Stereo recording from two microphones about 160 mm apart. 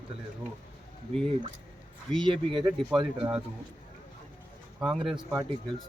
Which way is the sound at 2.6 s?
5° right (ahead or behind).